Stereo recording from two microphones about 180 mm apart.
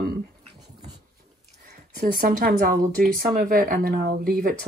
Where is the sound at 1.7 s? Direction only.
60° right (ahead or behind).